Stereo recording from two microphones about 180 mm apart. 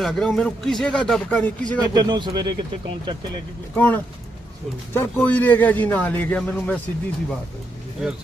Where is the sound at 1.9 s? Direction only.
25° right (ahead or behind).